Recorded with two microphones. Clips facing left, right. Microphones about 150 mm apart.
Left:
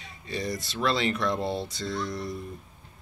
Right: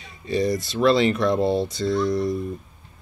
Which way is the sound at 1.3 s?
45° right (ahead or behind).